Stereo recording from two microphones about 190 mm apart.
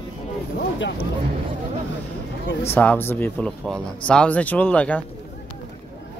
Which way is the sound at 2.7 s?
10° left (ahead or behind).